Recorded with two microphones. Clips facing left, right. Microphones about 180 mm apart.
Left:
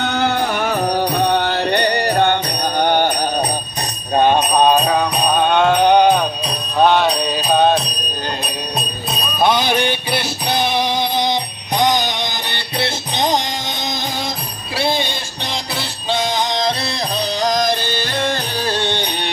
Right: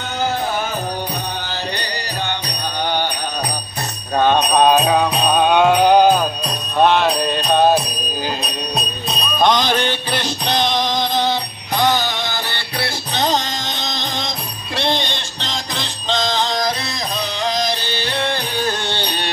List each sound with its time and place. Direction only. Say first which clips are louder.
0.0 s music: left 3 dB; 70° left (ahead or behind); by 3.3 s 50° left (ahead or behind)
4.1 s music: left 2 dB; 20° left (ahead or behind)
4.4 s music: even; centre (ahead or behind); by 16.7 s 20° left (ahead or behind)
17.4 s music: left 4 dB; 45° left (ahead or behind)
18.9 s music: left 2 dB; 15° left (ahead or behind)